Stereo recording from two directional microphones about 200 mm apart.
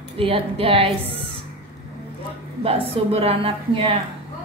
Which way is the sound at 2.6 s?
30° right (ahead or behind).